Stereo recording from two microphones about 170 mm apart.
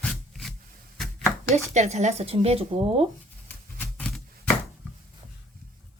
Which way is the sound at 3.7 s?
5° left (ahead or behind).